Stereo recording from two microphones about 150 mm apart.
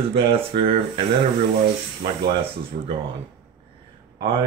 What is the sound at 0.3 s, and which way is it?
Speech, 40° right (ahead or behind).